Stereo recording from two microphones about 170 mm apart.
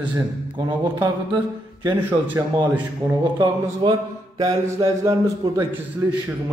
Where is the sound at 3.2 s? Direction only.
25° right (ahead or behind).